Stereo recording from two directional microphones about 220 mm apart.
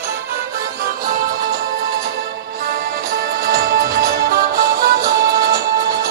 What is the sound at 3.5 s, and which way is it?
Music, 45° right (ahead or behind).